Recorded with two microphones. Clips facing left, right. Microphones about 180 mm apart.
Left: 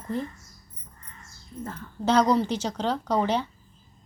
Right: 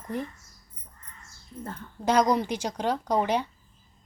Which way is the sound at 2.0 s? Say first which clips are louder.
Left 2 dB; 10° right (ahead or behind).